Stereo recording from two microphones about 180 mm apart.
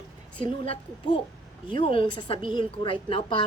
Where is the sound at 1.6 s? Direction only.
30° left (ahead or behind).